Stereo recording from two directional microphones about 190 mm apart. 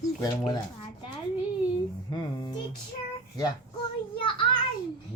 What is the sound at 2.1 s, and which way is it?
Speech, 25° left (ahead or behind).